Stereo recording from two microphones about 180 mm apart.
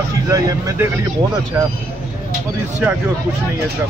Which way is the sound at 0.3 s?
20° right (ahead or behind).